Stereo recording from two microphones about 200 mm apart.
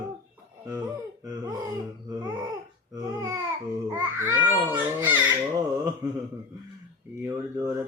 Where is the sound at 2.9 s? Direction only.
15° right (ahead or behind).